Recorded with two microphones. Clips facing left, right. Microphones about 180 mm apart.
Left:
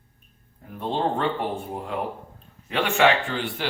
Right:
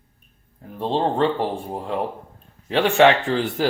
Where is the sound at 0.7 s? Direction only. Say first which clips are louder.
Right 4 dB; 30° right (ahead or behind).